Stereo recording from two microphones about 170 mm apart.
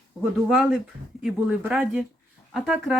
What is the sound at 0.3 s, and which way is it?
Speech, centre (ahead or behind).